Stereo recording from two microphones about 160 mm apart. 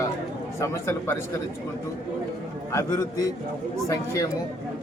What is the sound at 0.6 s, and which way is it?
Speech, 15° left (ahead or behind).